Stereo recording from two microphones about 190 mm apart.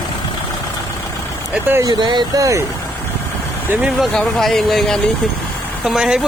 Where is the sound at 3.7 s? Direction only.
5° right (ahead or behind).